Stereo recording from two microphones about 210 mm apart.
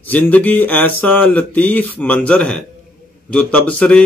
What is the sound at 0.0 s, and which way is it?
A man's voice, 5° left (ahead or behind).